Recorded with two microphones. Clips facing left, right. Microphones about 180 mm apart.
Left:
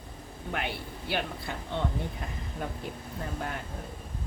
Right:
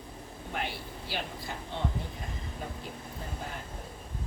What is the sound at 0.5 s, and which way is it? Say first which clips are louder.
Speech: left 2 dB; 60° left (ahead or behind).